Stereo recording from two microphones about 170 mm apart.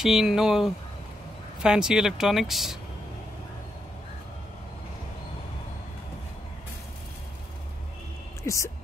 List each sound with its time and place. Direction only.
0.0 s speech: 5° right (ahead or behind)
8.5 s speech: 20° left (ahead or behind)